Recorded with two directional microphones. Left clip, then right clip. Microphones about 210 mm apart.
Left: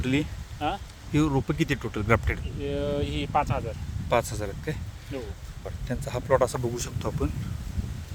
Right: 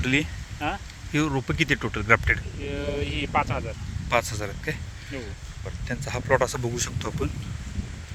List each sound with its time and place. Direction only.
0.0 s speech: centre (ahead or behind)
2.6 s speech: 30° left (ahead or behind)
4.1 s speech: centre (ahead or behind)
5.9 s speech: 5° left (ahead or behind)